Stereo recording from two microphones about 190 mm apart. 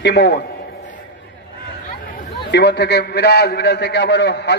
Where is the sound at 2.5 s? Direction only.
65° left (ahead or behind).